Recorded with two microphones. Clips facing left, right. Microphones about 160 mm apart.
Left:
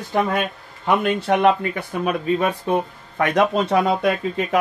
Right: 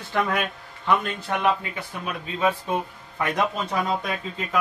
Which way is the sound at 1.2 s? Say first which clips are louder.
Left 7 dB; 80° left.